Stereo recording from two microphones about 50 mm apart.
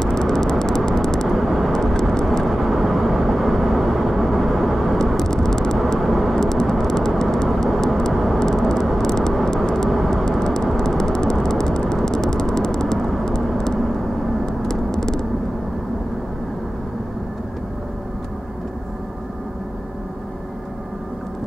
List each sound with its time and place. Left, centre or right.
0.0 s vehicle: centre
1.3 s vehicle: centre
1.7 s vehicle: centre
5.9 s vehicle: centre
6.4 s vehicle: centre
8.4 s vehicle: centre
14.4 s vehicle: centre